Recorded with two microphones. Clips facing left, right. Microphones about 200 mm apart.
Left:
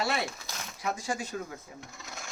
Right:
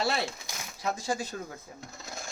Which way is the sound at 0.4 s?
10° right (ahead or behind).